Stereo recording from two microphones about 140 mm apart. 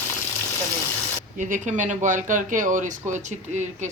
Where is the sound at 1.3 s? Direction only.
65° right (ahead or behind).